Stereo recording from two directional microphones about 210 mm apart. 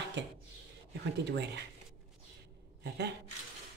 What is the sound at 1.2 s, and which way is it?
Speech, 55° right (ahead or behind).